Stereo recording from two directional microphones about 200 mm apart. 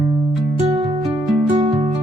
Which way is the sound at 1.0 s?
5° right (ahead or behind).